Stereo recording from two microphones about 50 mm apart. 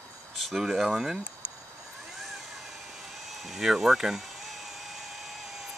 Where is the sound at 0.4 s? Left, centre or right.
Centre.